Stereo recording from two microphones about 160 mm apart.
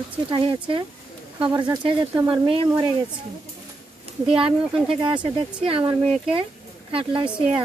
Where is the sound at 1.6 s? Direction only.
30° right (ahead or behind).